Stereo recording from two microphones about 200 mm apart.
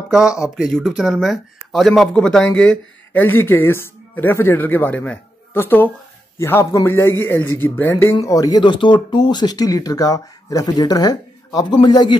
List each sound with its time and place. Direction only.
0.1 s speech: 5° right (ahead or behind); by 12.2 s 20° left (ahead or behind)